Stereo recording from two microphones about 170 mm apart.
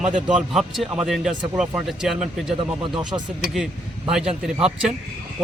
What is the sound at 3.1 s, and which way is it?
Speech, 25° right (ahead or behind).